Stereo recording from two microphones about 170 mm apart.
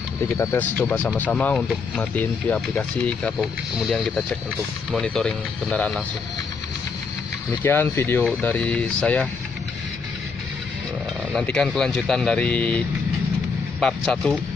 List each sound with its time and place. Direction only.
0.4 s speech: 15° left (ahead or behind)
0.7 s speech: 5° left (ahead or behind)
7.6 s speech: 15° left (ahead or behind)
11.3 s speech: 5° left (ahead or behind)